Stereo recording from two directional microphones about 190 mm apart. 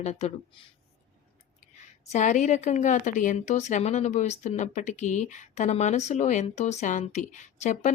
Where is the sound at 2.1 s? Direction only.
40° left (ahead or behind).